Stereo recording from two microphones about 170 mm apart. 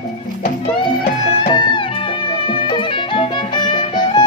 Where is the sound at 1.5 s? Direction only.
30° left (ahead or behind).